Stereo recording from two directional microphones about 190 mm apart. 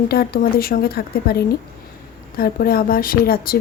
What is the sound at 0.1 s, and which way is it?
A woman's voice, 50° left (ahead or behind).